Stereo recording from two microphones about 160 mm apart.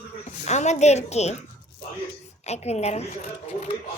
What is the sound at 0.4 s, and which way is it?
A child's voice, 45° left (ahead or behind).